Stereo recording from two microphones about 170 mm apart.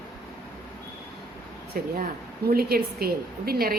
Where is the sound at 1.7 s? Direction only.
60° right (ahead or behind).